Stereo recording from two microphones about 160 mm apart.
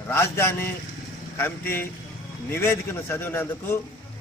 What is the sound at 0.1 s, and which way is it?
A man's voice, 15° left (ahead or behind).